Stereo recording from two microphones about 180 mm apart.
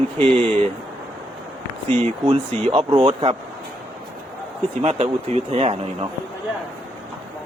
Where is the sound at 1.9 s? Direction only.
35° right (ahead or behind).